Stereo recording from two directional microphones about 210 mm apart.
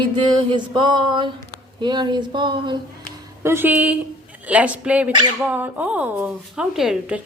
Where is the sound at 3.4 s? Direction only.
10° right (ahead or behind).